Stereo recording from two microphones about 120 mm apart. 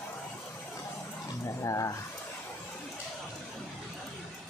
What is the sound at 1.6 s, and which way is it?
Speech, 25° left (ahead or behind).